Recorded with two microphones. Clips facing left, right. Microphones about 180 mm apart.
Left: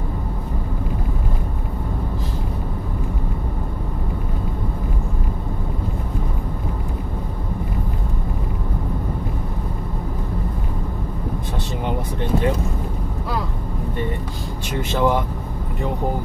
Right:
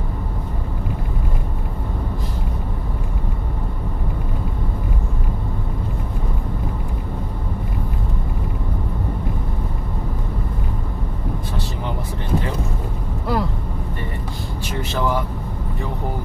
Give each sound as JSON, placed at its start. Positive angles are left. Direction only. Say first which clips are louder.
{"t": 14.9, "sound": "vehicle", "louder": "left 3 dB", "side_deg": 20}